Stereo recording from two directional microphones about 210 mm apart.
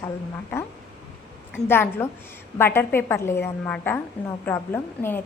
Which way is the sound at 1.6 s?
10° left (ahead or behind).